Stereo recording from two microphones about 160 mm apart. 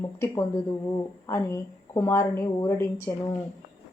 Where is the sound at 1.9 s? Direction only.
20° left (ahead or behind).